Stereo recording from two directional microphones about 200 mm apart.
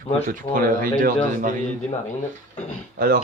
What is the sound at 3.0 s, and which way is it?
Speech, 50° right (ahead or behind).